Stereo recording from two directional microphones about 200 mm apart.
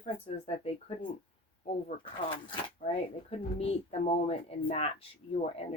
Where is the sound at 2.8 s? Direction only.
40° left (ahead or behind).